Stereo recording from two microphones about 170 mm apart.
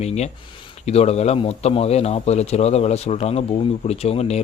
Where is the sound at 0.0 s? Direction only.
40° left (ahead or behind).